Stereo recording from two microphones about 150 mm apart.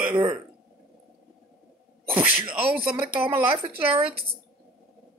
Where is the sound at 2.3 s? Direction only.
35° right (ahead or behind).